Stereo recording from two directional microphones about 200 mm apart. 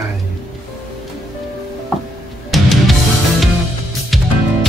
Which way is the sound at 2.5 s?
Centre (ahead or behind).